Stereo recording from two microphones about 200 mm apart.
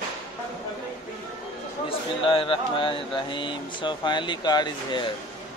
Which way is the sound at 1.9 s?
25° left (ahead or behind).